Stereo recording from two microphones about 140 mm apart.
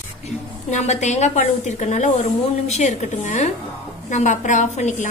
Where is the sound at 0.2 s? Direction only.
55° left (ahead or behind).